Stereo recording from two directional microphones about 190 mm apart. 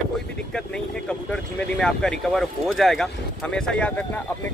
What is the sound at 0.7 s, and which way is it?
Speech, 5° left (ahead or behind).